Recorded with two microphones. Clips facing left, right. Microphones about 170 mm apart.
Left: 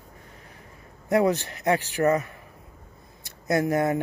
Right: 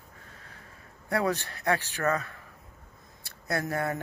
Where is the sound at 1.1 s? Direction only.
15° left (ahead or behind).